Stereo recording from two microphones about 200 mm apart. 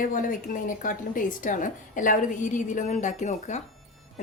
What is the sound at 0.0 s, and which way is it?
A woman's voice, 40° left (ahead or behind).